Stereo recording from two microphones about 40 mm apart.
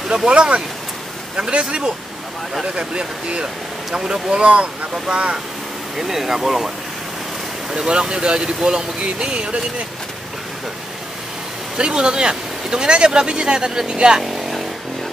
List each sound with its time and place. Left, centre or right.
0.3 s speech: right
5.9 s speech: centre
7.7 s speech: centre
11.7 s speech: right